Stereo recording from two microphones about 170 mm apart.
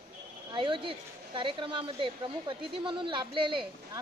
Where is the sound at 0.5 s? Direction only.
30° right (ahead or behind).